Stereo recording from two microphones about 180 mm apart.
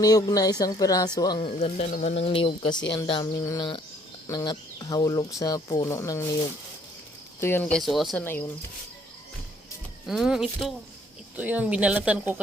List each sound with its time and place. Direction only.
0.0 s speech: 20° left (ahead or behind)
7.4 s speech: 10° left (ahead or behind)
8.2 s speech: 10° left (ahead or behind)
10.1 s speech: centre (ahead or behind)